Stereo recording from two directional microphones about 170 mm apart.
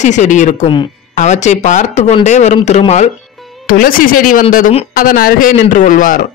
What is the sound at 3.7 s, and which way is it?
Speech, 55° left (ahead or behind).